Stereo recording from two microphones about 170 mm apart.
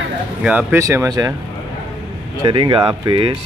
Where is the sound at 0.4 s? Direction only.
10° right (ahead or behind).